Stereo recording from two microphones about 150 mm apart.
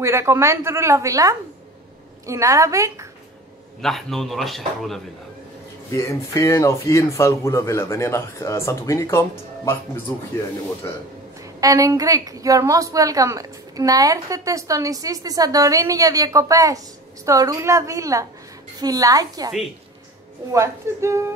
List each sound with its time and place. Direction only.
0.0 s a woman's voice: 20° right (ahead or behind)
3.8 s a man's voice: centre (ahead or behind)
5.9 s speech: 20° left (ahead or behind)
11.6 s a woman's voice: 25° right (ahead or behind)
20.5 s a woman's voice: 20° right (ahead or behind)